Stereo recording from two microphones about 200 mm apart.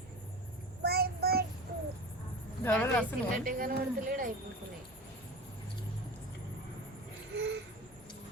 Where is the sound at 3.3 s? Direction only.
45° right (ahead or behind).